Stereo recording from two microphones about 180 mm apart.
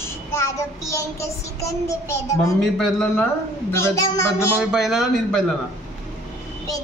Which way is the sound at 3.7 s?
15° left (ahead or behind).